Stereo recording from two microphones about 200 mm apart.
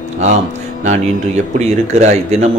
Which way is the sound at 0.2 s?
35° right (ahead or behind).